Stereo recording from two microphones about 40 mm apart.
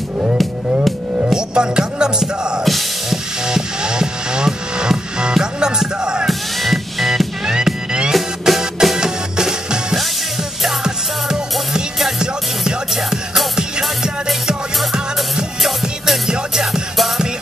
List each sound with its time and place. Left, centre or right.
1.3 s music: centre
2.6 s music: centre
3.4 s music: centre
6.2 s music: centre
7.4 s music: centre
8.1 s music: centre
12.2 s music: centre
14.8 s music: centre
16.3 s music: centre